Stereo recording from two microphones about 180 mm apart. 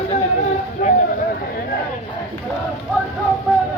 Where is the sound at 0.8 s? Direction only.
50° left (ahead or behind).